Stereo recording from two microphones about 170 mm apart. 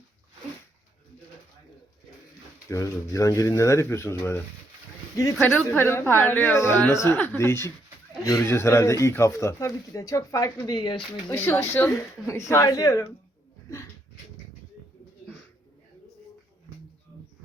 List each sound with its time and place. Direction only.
2.6 s speech: 20° left (ahead or behind)
11.3 s speech: 15° left (ahead or behind)